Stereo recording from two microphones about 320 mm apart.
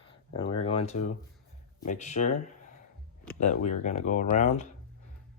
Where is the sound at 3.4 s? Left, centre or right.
Left.